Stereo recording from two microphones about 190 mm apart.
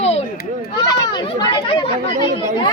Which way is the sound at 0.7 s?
20° left (ahead or behind).